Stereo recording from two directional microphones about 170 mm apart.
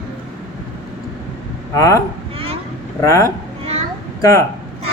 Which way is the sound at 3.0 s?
20° left (ahead or behind).